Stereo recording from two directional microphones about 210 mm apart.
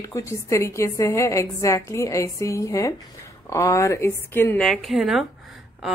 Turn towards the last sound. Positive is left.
turn(degrees=0)  # may be behind; listen again after turning